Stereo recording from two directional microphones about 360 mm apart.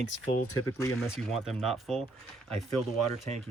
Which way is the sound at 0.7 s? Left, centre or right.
Centre.